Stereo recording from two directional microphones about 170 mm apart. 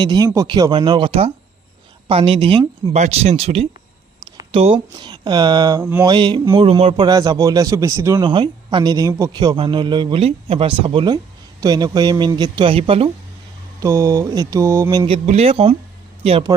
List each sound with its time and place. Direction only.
0.0 s speech: 25° right (ahead or behind)
2.9 s speech: 40° right (ahead or behind); by 5.8 s 25° right (ahead or behind)
5.8 s mantra: 10° right (ahead or behind)
6.1 s speech: 25° right (ahead or behind)
13.7 s mantra: 15° right (ahead or behind)
15.1 s speech: 35° right (ahead or behind)